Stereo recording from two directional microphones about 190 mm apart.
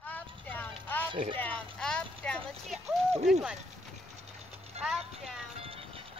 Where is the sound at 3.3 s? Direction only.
5° right (ahead or behind).